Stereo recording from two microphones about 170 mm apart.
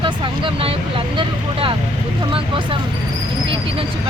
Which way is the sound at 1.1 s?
30° right (ahead or behind).